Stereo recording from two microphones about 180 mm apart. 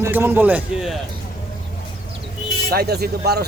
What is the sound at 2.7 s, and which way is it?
Speech, 60° right (ahead or behind).